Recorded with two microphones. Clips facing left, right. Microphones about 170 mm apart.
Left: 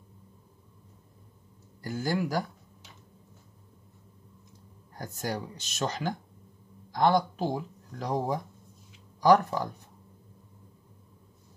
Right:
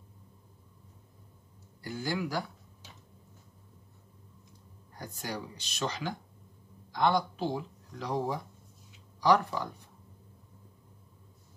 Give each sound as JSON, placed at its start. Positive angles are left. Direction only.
{"t": 1.8, "sound": "speech", "side_deg": 45}
{"t": 4.9, "sound": "speech", "side_deg": 45}